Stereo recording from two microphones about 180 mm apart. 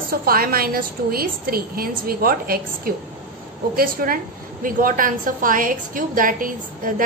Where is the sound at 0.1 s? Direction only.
55° right (ahead or behind).